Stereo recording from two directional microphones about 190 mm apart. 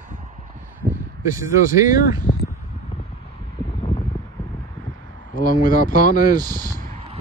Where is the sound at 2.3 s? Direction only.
40° left (ahead or behind).